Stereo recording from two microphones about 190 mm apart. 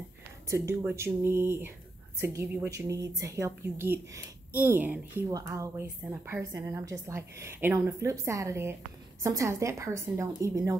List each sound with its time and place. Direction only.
0.5 s a woman's voice: 15° right (ahead or behind)